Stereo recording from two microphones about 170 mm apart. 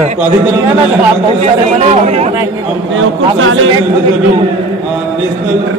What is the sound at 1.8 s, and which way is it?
Speech, 40° right (ahead or behind).